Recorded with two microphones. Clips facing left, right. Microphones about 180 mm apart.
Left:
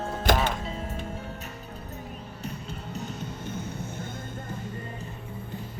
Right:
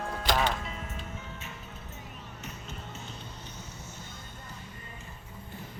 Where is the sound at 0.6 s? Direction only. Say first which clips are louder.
Left 6 dB; 30° left (ahead or behind).